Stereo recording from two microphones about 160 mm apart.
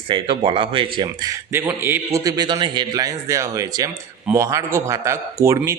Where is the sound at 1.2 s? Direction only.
15° right (ahead or behind).